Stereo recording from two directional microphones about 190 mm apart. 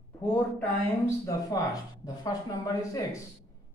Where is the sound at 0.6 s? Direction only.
15° left (ahead or behind).